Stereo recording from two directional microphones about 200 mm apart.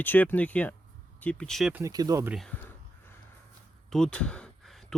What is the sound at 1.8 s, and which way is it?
Speech, 20° right (ahead or behind).